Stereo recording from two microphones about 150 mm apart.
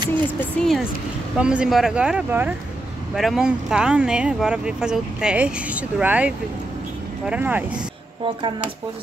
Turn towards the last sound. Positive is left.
turn(degrees=-10)  # may be behind; listen again after turning